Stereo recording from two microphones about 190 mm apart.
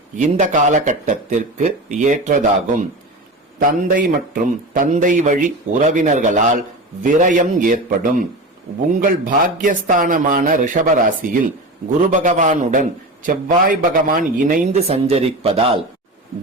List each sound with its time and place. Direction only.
0.2 s a man's voice: 40° right (ahead or behind)